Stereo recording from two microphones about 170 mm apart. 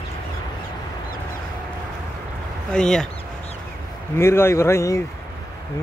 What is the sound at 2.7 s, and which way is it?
Speech, 5° left (ahead or behind).